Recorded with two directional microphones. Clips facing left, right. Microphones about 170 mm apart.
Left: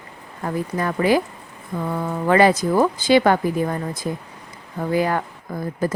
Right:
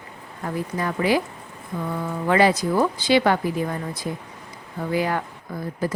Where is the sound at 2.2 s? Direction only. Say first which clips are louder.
Left 3 dB; 50° left (ahead or behind).